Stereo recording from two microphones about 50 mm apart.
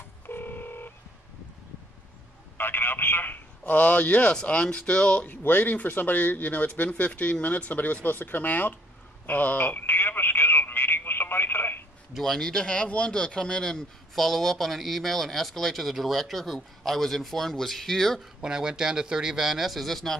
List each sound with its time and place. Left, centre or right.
0.3 s telephone dialing: left
2.5 s telephone: left
4.4 s speech: left
5.3 s speech: left
6.9 s speech: left
7.4 s speech: left
9.2 s telephone: left
12.1 s speech: centre
14.1 s speech: centre
18.4 s speech: centre